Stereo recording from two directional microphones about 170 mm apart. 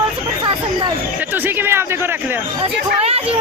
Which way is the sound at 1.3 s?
10° right (ahead or behind).